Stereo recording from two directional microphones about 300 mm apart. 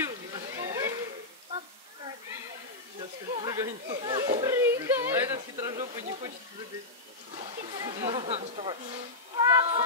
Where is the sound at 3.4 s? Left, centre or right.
Centre.